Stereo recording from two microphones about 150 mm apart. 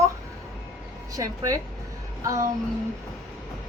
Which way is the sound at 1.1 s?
25° right (ahead or behind).